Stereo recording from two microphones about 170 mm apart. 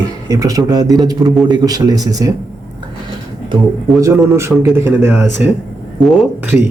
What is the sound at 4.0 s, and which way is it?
Speech, 15° right (ahead or behind).